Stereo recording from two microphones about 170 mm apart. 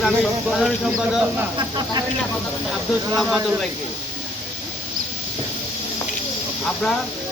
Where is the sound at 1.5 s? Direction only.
25° right (ahead or behind).